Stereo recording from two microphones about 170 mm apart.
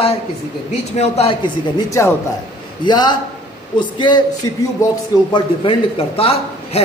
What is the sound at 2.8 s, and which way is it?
A man's voice, 25° left (ahead or behind).